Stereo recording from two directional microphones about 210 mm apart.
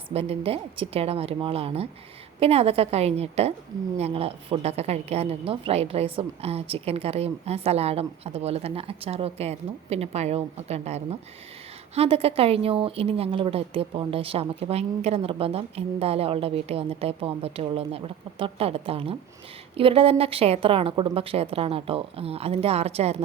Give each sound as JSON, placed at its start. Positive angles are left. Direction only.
{"t": 0.1, "sound": "a woman's voice", "side_deg": -30}